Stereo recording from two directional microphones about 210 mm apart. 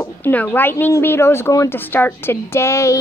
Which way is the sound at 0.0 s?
10° left (ahead or behind).